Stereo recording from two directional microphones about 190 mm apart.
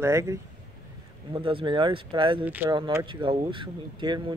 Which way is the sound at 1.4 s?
25° right (ahead or behind).